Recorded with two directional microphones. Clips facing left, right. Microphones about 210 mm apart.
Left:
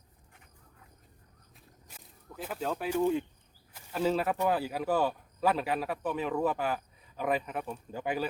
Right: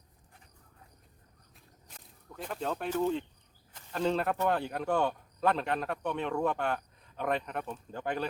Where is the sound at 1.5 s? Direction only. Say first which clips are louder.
Left 1 dB; 5° left (ahead or behind).